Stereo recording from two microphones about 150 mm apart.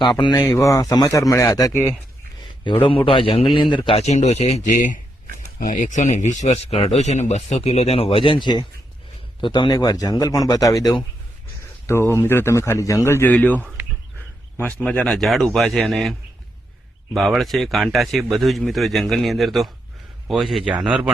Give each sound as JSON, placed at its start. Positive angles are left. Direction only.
{"t": 0.0, "sound": "a man's voice", "side_deg": 30}
{"t": 2.6, "sound": "a man's voice", "side_deg": 35}
{"t": 14.8, "sound": "speech", "side_deg": 5}
{"t": 17.2, "sound": "speech", "side_deg": 0}